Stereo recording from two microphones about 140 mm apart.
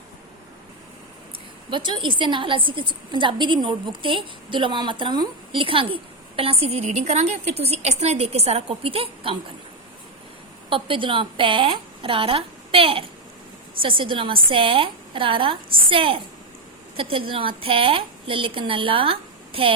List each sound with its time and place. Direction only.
1.7 s a woman's voice: 35° right (ahead or behind)
10.7 s a woman's voice: 40° right (ahead or behind)